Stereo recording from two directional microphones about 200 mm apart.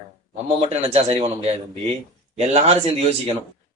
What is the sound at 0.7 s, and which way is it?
A man's voice, 30° right (ahead or behind).